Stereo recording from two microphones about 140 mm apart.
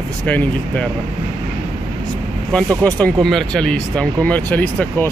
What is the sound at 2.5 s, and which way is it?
Speech, 10° left (ahead or behind).